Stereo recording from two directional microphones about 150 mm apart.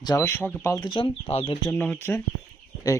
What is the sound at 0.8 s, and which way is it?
Speech, 30° left (ahead or behind).